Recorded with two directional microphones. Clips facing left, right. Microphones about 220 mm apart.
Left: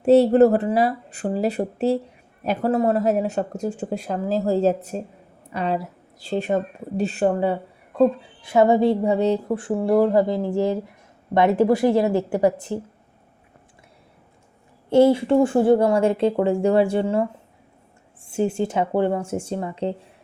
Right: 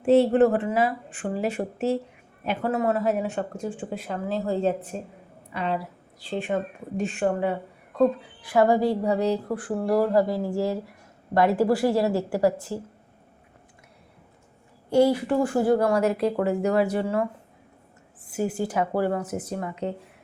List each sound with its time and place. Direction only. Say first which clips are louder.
0.0 s a woman's voice: left 4 dB; 40° left (ahead or behind); by 12.8 s 20° left (ahead or behind)
14.8 s a woman's voice: left 5 dB; 25° left (ahead or behind)
18.3 s a woman's voice: left 4 dB; 25° left (ahead or behind)